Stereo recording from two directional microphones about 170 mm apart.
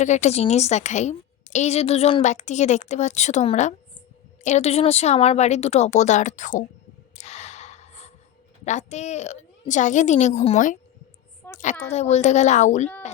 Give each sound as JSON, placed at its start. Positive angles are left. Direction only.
{"t": 0.0, "sound": "a woman's voice", "side_deg": 45}
{"t": 7.2, "sound": "gasp", "side_deg": 40}
{"t": 8.6, "sound": "a woman's voice", "side_deg": 45}
{"t": 11.4, "sound": "a sound", "side_deg": 10}
{"t": 11.9, "sound": "a woman's voice", "side_deg": 40}